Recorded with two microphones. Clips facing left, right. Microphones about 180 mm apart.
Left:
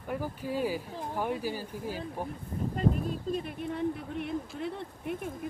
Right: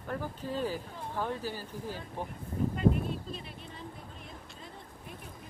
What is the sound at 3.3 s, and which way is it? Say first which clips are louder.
Speech: left 12 dB; 60° left (ahead or behind).